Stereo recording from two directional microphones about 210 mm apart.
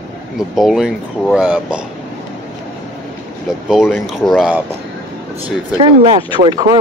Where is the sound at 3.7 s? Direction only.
Centre (ahead or behind).